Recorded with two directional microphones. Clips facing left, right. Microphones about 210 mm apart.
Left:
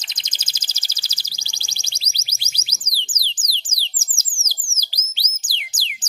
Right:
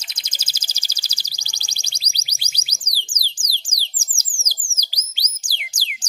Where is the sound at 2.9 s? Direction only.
10° right (ahead or behind).